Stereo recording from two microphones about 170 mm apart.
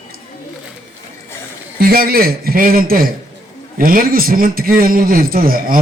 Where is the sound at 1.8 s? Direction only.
60° right (ahead or behind).